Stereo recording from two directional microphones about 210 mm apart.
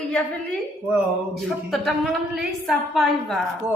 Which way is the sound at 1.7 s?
Centre (ahead or behind).